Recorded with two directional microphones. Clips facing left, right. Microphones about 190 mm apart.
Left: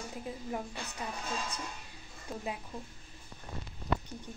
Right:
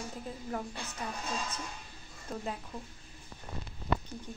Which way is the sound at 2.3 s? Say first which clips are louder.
Right 2 dB; centre (ahead or behind).